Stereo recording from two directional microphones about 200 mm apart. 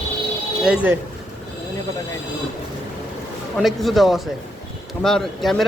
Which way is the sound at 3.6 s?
Centre (ahead or behind).